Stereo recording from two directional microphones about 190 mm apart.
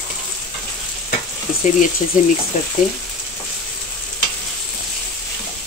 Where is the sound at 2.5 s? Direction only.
40° left (ahead or behind).